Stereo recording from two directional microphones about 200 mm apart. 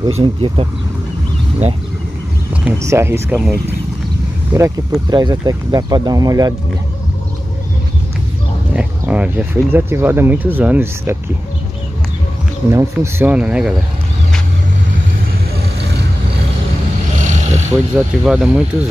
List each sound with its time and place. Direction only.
0.2 s speech: 25° right (ahead or behind)
2.8 s speech: 15° right (ahead or behind)
8.7 s speech: 5° right (ahead or behind)
12.7 s speech: 10° right (ahead or behind)
17.2 s a sound: 35° right (ahead or behind)
17.9 s speech: 5° right (ahead or behind)